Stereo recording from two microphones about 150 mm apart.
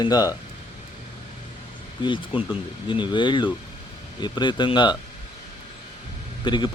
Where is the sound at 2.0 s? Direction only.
30° left (ahead or behind).